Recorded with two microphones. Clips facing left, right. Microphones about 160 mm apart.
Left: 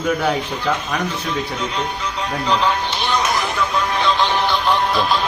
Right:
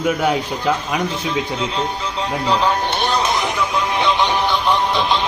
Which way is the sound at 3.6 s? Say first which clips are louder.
Right 1 dB; 15° right (ahead or behind).